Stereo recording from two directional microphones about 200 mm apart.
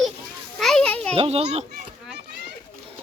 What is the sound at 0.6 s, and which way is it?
Speech, 5° left (ahead or behind).